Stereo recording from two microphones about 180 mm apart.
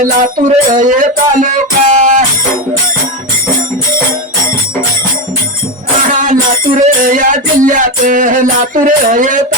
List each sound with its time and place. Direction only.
0.0 s music: 45° right (ahead or behind)
6.1 s music: 45° right (ahead or behind)